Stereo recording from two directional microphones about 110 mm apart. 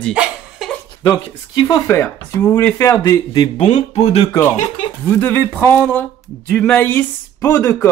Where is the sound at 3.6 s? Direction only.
80° left.